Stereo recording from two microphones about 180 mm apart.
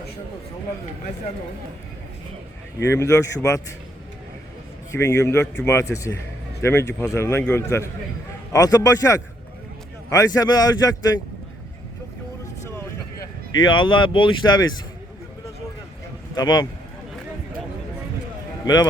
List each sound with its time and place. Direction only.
2.9 s a man's voice: 15° left (ahead or behind)
4.9 s a man's voice: 15° left (ahead or behind)
13.7 s a man's voice: 25° left (ahead or behind)
16.3 s a man's voice: 20° left (ahead or behind)
18.6 s a man's voice: 25° left (ahead or behind)